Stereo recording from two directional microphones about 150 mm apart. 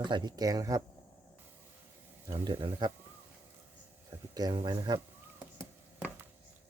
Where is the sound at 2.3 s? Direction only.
30° right (ahead or behind).